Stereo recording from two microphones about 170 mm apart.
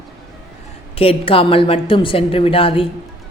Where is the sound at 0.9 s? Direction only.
35° left (ahead or behind).